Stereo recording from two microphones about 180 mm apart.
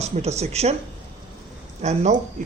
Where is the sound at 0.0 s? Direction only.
35° right (ahead or behind).